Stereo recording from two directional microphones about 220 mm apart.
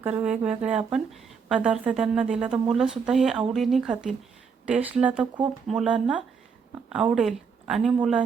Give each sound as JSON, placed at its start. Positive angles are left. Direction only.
{"t": 0.0, "sound": "speech", "side_deg": -5}